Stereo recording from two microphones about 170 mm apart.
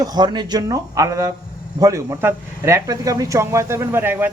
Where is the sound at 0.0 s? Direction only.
25° right (ahead or behind).